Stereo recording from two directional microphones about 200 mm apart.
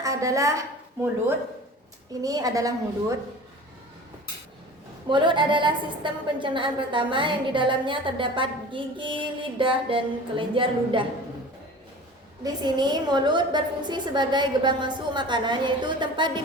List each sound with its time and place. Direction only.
0.0 s a woman's voice: 15° right (ahead or behind)
2.2 s a woman's voice: 15° right (ahead or behind)
5.0 s a woman's voice: 25° right (ahead or behind)
12.4 s a woman's voice: 20° right (ahead or behind)